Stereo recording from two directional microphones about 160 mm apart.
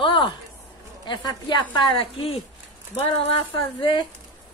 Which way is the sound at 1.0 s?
30° left (ahead or behind).